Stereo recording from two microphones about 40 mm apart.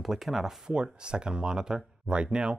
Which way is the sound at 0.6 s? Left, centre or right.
Right.